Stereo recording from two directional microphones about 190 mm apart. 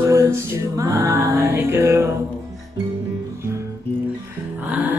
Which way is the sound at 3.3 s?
15° right (ahead or behind).